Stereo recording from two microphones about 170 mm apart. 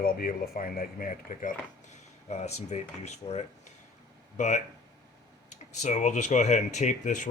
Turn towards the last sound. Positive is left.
turn(degrees=45)  # may be behind; listen again after turning